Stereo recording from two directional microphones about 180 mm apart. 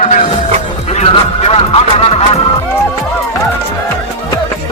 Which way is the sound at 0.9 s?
35° left (ahead or behind).